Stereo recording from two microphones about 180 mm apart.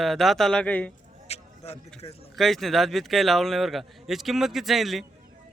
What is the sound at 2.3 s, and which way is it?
Speech, centre (ahead or behind).